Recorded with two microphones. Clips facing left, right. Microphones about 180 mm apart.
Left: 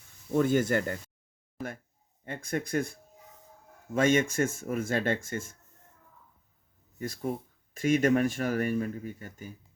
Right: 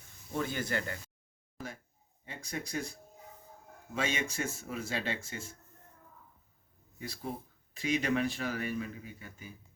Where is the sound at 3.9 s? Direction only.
50° left (ahead or behind).